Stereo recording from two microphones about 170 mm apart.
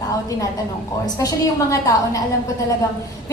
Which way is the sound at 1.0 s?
20° left (ahead or behind).